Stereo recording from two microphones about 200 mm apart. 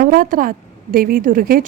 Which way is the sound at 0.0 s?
45° right (ahead or behind).